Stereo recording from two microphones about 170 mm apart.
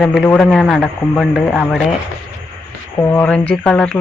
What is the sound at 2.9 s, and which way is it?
Speech, 10° left (ahead or behind).